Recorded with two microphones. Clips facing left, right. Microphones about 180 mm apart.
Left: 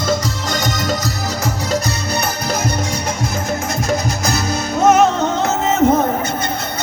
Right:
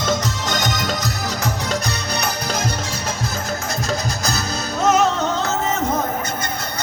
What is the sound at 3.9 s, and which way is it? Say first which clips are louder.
Music: left 5 dB; 20° left (ahead or behind).